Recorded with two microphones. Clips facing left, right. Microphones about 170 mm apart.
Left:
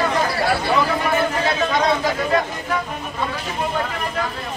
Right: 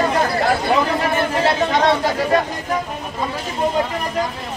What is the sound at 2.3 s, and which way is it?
Speech, 40° right (ahead or behind).